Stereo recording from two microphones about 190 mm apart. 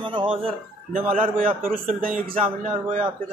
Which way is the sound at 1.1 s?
45° right (ahead or behind).